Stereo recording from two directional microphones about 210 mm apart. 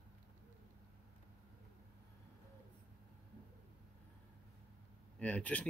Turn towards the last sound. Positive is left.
turn(degrees=5)  # may be behind; listen again after turning